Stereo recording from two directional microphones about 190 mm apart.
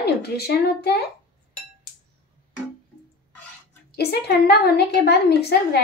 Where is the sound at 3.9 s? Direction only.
55° left (ahead or behind).